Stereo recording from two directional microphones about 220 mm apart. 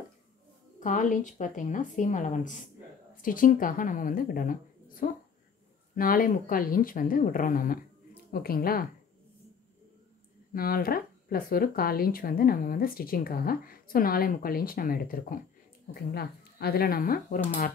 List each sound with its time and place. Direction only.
0.7 s a woman's voice: 35° left (ahead or behind)
10.5 s speech: 40° left (ahead or behind)